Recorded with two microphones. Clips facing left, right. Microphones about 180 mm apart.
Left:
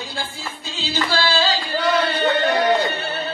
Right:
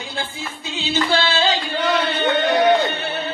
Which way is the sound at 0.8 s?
20° right (ahead or behind).